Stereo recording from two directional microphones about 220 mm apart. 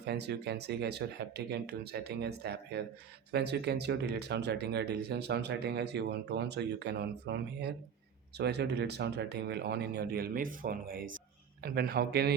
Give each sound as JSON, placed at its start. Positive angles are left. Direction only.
{"t": 0.0, "sound": "speech", "side_deg": -50}